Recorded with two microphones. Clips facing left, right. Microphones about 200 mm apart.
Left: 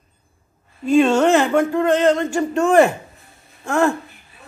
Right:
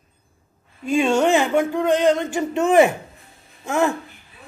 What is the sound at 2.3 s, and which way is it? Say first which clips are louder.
Speech: left 1 dB; 20° right (ahead or behind).